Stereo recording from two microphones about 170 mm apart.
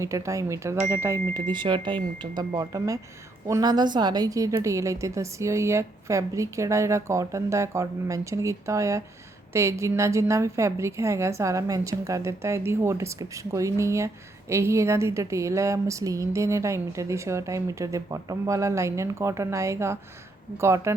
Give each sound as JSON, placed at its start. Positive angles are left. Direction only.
{"t": 0.0, "sound": "a woman's voice", "side_deg": -15}
{"t": 1.5, "sound": "a woman's voice", "side_deg": -25}